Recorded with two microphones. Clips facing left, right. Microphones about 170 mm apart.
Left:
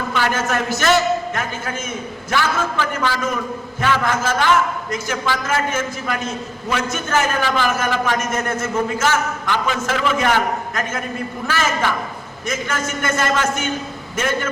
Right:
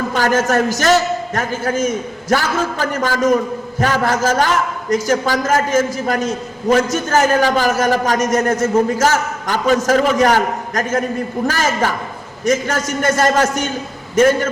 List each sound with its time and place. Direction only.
0.1 s a man's voice: 40° right (ahead or behind)